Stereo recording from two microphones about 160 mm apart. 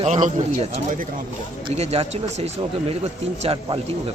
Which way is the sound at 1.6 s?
40° right (ahead or behind).